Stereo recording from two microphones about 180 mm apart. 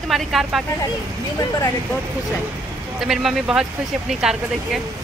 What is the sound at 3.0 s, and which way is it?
Speech, centre (ahead or behind).